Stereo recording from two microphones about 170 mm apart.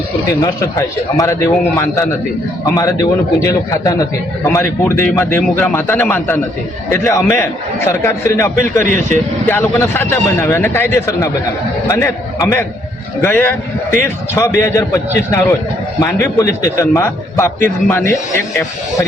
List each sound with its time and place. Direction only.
0.4 s a man's voice: 20° left (ahead or behind)
8.9 s speech: 45° right (ahead or behind)
9.5 s a man's voice: 15° left (ahead or behind)